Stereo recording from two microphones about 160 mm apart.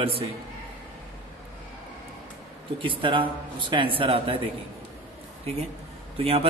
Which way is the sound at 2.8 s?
30° right (ahead or behind).